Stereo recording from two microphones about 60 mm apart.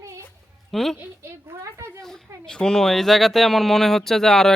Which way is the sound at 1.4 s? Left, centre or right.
Right.